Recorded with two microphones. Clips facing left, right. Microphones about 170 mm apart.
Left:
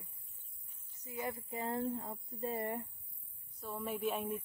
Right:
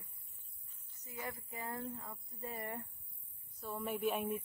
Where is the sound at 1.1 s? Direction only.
20° left (ahead or behind).